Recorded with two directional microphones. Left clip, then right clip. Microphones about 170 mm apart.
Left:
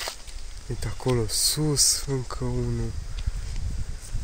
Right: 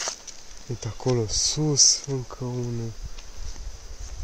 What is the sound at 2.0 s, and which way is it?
Speech, 20° left (ahead or behind).